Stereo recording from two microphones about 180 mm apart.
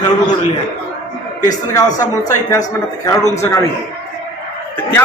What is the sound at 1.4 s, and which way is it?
A man's voice, 20° left (ahead or behind).